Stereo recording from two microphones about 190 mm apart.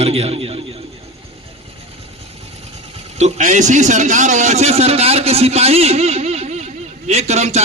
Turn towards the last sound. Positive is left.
turn(degrees=-35)  # may be behind; listen again after turning